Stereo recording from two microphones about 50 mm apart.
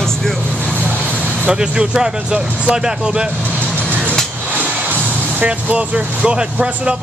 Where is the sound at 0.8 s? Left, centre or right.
Left.